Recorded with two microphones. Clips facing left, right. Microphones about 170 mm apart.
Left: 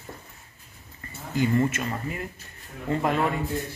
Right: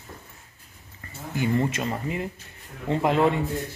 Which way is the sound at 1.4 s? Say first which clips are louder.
Left 1 dB; 15° right (ahead or behind).